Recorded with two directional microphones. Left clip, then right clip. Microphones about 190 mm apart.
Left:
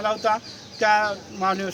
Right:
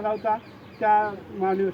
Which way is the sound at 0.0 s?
30° left (ahead or behind).